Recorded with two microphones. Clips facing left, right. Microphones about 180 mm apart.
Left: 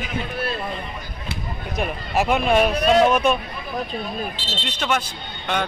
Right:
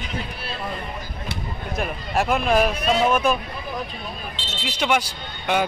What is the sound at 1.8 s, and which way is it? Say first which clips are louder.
Speech: left 2 dB; centre (ahead or behind).